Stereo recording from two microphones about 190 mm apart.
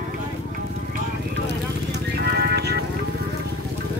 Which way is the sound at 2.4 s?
60° right (ahead or behind).